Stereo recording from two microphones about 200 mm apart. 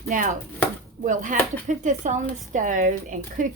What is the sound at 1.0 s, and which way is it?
Speech, 40° right (ahead or behind).